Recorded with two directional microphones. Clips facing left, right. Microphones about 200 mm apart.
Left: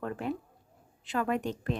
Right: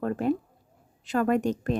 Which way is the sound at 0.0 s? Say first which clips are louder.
Right 8 dB; 45° right (ahead or behind).